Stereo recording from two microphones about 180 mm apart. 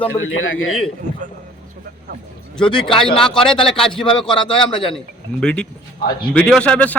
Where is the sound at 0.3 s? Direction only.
90° left.